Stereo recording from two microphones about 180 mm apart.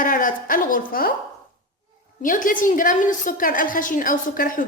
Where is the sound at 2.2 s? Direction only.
45° left (ahead or behind).